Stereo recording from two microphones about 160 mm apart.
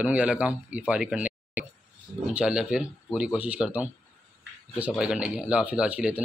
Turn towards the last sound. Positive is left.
turn(degrees=-10)  # may be behind; listen again after turning